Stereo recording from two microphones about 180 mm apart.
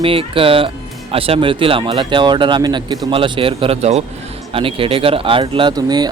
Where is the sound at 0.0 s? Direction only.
30° right (ahead or behind).